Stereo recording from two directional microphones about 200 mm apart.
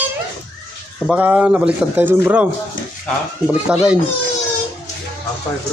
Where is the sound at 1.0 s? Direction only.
5° right (ahead or behind).